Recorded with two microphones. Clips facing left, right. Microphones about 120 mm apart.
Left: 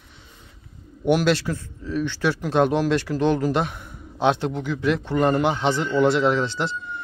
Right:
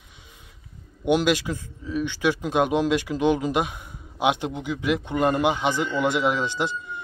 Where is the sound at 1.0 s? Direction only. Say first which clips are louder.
Left 1 dB; 15° right (ahead or behind).